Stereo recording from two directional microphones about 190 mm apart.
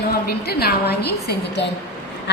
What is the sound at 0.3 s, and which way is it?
A woman's voice, 55° left (ahead or behind).